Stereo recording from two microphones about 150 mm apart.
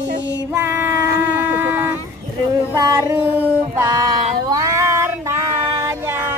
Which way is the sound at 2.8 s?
20° right (ahead or behind).